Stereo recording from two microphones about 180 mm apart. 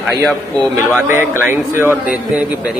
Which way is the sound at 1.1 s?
10° right (ahead or behind).